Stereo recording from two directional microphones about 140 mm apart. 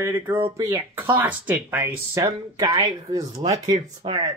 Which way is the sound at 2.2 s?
25° right (ahead or behind).